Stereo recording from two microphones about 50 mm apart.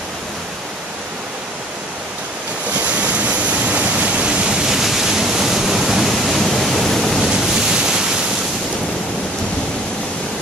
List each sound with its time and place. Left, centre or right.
2.8 s waves: right
4.7 s waterfall: centre
7.3 s waves: centre